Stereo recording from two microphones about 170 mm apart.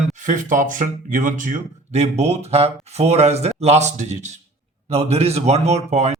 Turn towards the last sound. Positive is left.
turn(degrees=-40)  # may be behind; listen again after turning